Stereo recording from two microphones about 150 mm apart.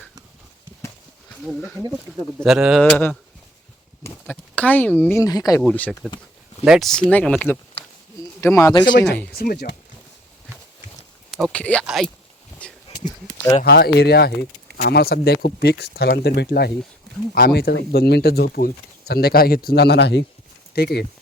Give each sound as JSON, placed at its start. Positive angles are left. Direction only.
{"t": 2.4, "sound": "a man's voice", "side_deg": -5}
{"t": 2.9, "sound": "speech", "side_deg": 5}
{"t": 5.2, "sound": "speech", "side_deg": 25}
{"t": 5.7, "sound": "speech", "side_deg": 10}
{"t": 8.4, "sound": "speech", "side_deg": 20}
{"t": 9.4, "sound": "speech", "side_deg": 90}
{"t": 11.3, "sound": "a man's voice", "side_deg": 5}
{"t": 12.6, "sound": "a sound", "side_deg": 10}
{"t": 13.1, "sound": "a sound", "side_deg": 20}
{"t": 13.6, "sound": "speech", "side_deg": 90}